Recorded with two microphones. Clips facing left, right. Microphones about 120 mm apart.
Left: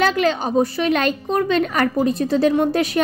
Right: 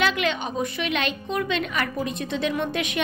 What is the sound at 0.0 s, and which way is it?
Speech, 40° left (ahead or behind).